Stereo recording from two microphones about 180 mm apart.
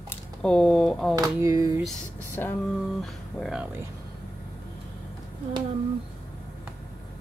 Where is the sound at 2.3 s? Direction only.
10° left (ahead or behind).